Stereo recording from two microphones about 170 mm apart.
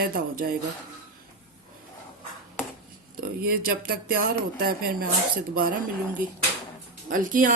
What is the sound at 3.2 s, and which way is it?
A woman's voice, 60° right (ahead or behind).